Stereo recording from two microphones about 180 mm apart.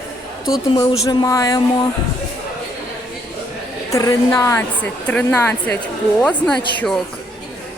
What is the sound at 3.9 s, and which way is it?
A woman's voice, 20° left (ahead or behind).